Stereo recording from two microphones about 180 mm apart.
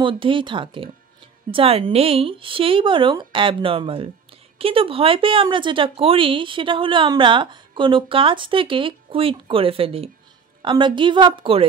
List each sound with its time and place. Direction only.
0.0 s speech: 30° right (ahead or behind)